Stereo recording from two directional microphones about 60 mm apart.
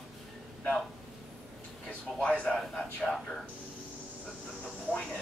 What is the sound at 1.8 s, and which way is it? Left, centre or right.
A man's voice, left.